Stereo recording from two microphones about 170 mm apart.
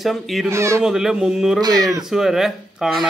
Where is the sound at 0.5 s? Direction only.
15° right (ahead or behind).